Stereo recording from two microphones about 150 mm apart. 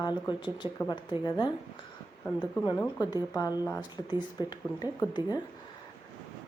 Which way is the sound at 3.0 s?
30° left (ahead or behind).